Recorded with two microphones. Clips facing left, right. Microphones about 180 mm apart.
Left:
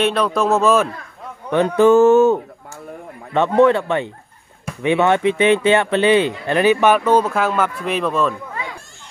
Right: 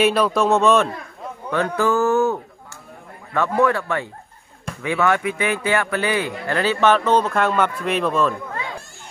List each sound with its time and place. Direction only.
0.0 s speech: 5° right (ahead or behind)
1.5 s speech: 20° left (ahead or behind); by 8.4 s centre (ahead or behind)